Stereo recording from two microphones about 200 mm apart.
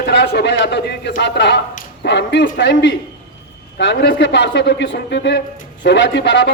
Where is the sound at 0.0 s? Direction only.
55° left (ahead or behind).